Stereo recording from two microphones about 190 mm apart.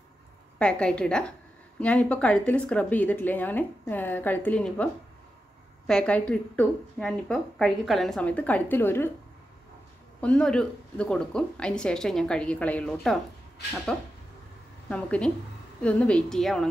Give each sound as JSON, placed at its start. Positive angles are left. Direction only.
{"t": 0.6, "sound": "a woman's voice", "side_deg": 5}
{"t": 5.9, "sound": "a woman's voice", "side_deg": 5}
{"t": 10.2, "sound": "a woman's voice", "side_deg": 5}